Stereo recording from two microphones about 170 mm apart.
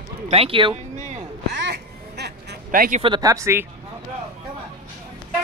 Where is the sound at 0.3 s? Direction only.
35° right (ahead or behind).